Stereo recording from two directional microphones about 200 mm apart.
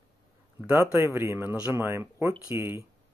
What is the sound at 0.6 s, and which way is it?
Speech, 10° right (ahead or behind).